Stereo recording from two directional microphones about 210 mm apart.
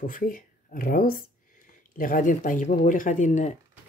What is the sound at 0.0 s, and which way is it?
Speech, 40° left (ahead or behind).